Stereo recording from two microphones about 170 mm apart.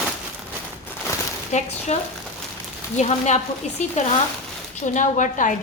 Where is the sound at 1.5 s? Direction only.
45° left (ahead or behind).